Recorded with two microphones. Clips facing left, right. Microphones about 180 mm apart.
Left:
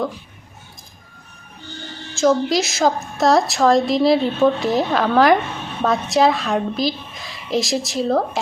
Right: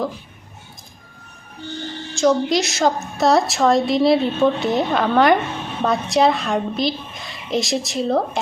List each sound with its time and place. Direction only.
2.1 s a woman's voice: centre (ahead or behind)